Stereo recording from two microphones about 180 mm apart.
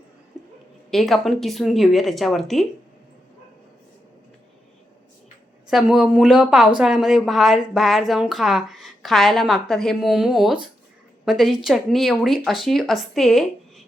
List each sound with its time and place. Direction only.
0.9 s speech: centre (ahead or behind)
5.6 s speech: centre (ahead or behind)